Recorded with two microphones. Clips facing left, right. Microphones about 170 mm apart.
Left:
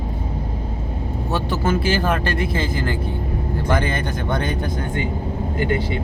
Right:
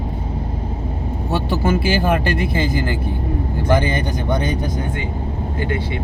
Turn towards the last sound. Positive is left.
turn(degrees=-15)  # may be behind; listen again after turning